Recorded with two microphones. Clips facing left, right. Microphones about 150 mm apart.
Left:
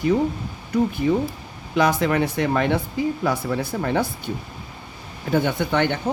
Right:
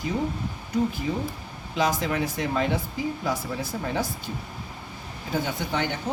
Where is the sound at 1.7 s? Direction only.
60° left (ahead or behind).